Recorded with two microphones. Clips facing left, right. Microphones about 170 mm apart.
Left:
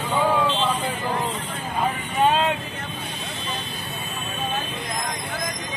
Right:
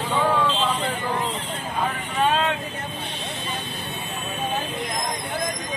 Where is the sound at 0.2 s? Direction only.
10° left (ahead or behind).